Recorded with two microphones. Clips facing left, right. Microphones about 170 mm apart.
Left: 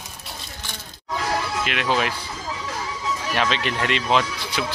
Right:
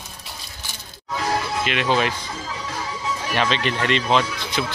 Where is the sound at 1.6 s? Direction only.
5° left (ahead or behind).